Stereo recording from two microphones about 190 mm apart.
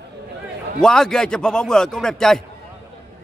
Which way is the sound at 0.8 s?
5° left (ahead or behind).